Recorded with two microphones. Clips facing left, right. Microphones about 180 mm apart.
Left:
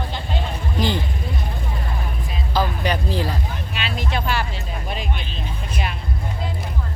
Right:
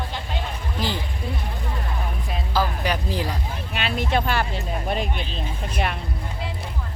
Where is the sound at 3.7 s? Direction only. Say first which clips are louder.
Right 4 dB; 55° right (ahead or behind).